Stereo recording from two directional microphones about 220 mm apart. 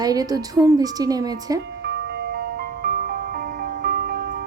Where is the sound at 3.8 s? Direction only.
45° right (ahead or behind).